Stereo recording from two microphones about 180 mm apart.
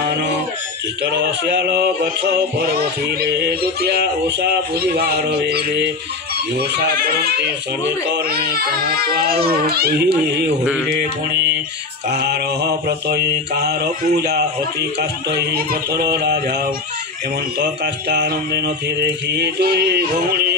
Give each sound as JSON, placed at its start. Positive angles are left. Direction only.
{"t": 1.1, "sound": "a man's voice", "side_deg": -70}
{"t": 3.2, "sound": "music", "side_deg": -60}
{"t": 14.2, "sound": "music", "side_deg": -60}
{"t": 18.1, "sound": "a man's voice", "side_deg": -70}
{"t": 19.0, "sound": "music", "side_deg": -65}